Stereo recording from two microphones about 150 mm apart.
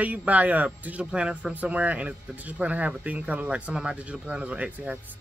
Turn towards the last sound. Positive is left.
turn(degrees=-10)  # may be behind; listen again after turning